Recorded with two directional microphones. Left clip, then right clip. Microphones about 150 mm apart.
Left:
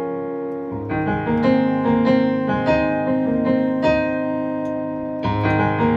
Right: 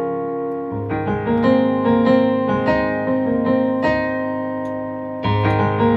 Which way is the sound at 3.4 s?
45° right (ahead or behind).